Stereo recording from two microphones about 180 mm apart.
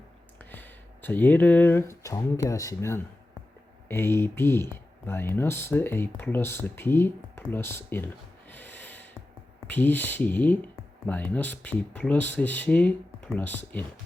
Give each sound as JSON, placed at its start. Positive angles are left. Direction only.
{"t": 0.5, "sound": "speech", "side_deg": 10}